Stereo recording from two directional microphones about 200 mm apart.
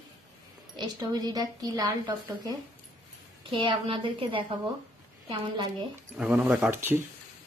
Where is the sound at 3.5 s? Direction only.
25° right (ahead or behind).